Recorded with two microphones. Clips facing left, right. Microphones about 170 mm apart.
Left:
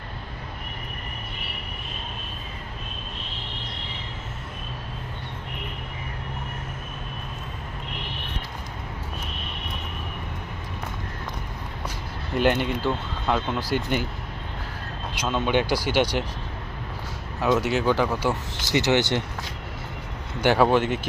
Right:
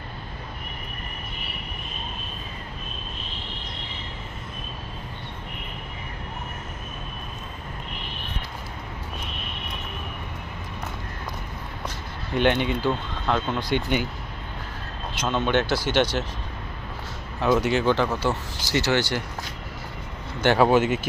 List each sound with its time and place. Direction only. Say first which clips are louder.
12.3 s speech: even; 5° left (ahead or behind)
15.1 s speech: even; 10° left (ahead or behind)
17.5 s speech: right 1 dB; centre (ahead or behind); by 19.2 s 20° left (ahead or behind)
20.4 s speech: even; 5° left (ahead or behind)
20.7 s speech: right 2 dB; 5° right (ahead or behind)